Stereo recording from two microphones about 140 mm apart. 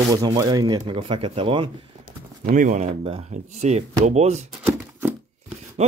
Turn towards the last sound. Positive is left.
turn(degrees=-50)  # may be behind; listen again after turning